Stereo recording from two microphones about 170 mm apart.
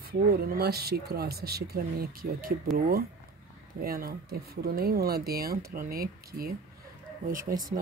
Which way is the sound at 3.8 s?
60° right (ahead or behind).